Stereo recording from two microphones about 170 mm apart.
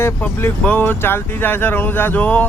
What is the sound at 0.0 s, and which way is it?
Speech, 15° left (ahead or behind).